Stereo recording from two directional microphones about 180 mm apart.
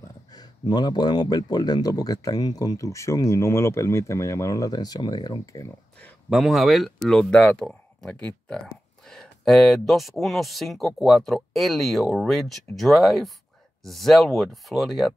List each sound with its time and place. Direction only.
0.3 s speech: 25° left (ahead or behind)
5.9 s speech: 5° left (ahead or behind)